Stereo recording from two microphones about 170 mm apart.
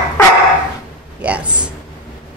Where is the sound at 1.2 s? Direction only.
5° right (ahead or behind).